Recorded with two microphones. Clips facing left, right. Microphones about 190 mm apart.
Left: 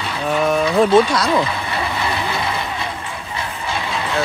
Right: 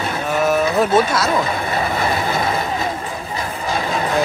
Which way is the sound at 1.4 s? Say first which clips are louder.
Right 2 dB; 45° right (ahead or behind).